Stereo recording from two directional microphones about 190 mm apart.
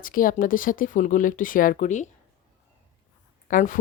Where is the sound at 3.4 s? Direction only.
45° left (ahead or behind).